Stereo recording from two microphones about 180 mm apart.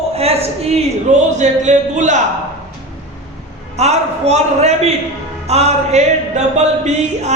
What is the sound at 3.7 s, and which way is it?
Music, 35° right (ahead or behind).